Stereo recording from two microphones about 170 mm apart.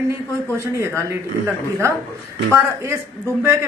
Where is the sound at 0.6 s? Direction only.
15° right (ahead or behind).